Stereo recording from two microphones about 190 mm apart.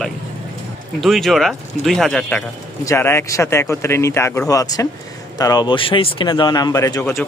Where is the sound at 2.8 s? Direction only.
15° left (ahead or behind).